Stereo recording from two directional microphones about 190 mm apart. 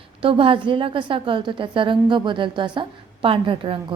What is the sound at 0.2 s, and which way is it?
A woman's voice, 30° right (ahead or behind).